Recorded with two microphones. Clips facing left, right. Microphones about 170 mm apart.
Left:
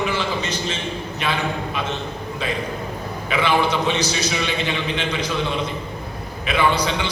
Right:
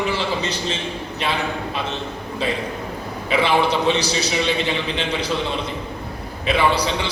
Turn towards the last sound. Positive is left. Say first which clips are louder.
# right 1 dB
turn(degrees=-30)  # may be behind; listen again after turning